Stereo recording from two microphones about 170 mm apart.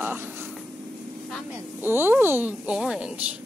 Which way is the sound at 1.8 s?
10° right (ahead or behind).